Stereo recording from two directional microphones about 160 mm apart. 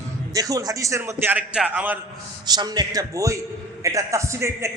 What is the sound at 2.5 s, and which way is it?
A man's voice, 25° right (ahead or behind).